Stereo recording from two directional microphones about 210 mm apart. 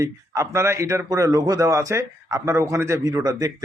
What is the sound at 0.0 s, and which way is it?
A man's voice, 15° right (ahead or behind).